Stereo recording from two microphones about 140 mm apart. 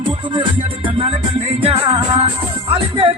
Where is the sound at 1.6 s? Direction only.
40° right (ahead or behind).